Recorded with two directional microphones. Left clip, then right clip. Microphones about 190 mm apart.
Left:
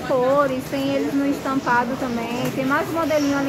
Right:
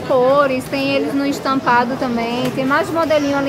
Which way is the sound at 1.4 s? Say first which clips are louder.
Right 7 dB; 20° right (ahead or behind).